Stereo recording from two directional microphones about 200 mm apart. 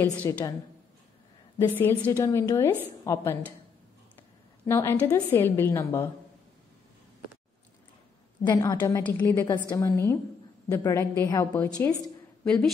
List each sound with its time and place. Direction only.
0.2 s a woman's voice: 15° left (ahead or behind)
1.6 s a woman's voice: 10° left (ahead or behind)
4.6 s a woman's voice: 10° left (ahead or behind)
8.5 s a woman's voice: 20° left (ahead or behind); by 12.7 s 5° left (ahead or behind)